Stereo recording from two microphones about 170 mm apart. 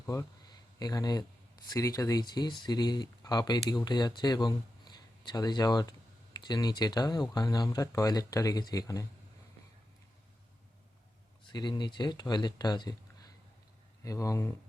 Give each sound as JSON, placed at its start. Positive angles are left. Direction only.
{"t": 0.0, "sound": "speech", "side_deg": 15}
{"t": 11.4, "sound": "speech", "side_deg": 25}